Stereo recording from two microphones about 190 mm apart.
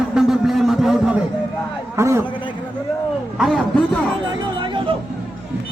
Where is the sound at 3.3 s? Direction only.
Centre (ahead or behind).